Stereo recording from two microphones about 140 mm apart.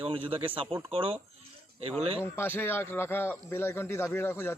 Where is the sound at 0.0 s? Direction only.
40° right (ahead or behind).